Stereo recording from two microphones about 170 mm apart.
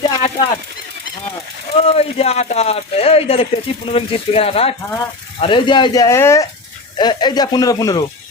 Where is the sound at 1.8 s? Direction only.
35° left (ahead or behind).